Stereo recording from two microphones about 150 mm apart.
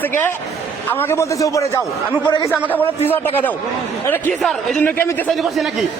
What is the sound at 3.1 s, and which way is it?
A man's voice, 10° left (ahead or behind).